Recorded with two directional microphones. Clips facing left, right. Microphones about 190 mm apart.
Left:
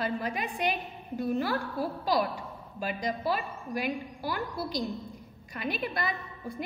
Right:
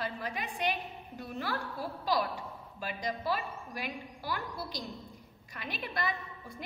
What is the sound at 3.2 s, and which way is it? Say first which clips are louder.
A woman's voice: left 3 dB; 15° left (ahead or behind).